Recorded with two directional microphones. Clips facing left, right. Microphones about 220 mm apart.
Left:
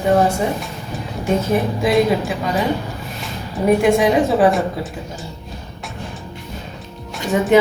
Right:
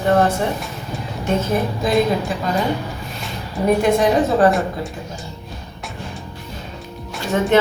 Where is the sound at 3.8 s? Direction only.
10° left (ahead or behind).